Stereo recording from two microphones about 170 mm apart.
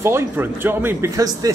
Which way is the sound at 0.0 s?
15° right (ahead or behind).